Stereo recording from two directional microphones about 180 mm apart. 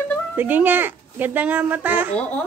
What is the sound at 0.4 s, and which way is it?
Speech, 10° right (ahead or behind).